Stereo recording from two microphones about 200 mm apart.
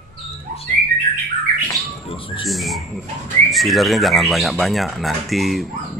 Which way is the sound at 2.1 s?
25° left (ahead or behind).